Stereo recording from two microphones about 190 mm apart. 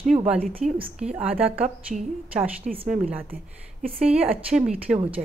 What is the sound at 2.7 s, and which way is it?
Speech, 45° right (ahead or behind).